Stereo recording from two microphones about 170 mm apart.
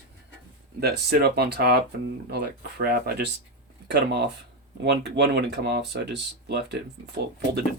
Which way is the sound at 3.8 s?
75° right (ahead or behind).